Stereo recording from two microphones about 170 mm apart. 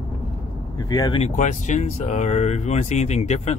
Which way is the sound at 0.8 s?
20° left (ahead or behind).